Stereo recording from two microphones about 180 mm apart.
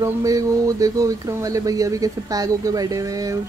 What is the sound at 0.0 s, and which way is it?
A woman's voice, 20° right (ahead or behind).